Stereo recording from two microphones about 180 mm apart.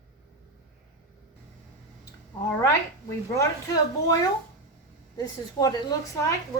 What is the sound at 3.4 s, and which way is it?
A woman's voice, 20° left (ahead or behind).